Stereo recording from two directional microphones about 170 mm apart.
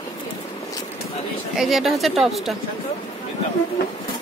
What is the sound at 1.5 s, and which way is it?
Speech, centre (ahead or behind).